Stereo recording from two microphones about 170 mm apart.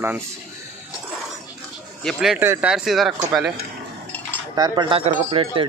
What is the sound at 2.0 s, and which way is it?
Speech, centre (ahead or behind).